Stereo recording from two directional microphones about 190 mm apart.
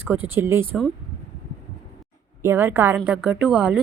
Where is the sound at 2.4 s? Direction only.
10° right (ahead or behind).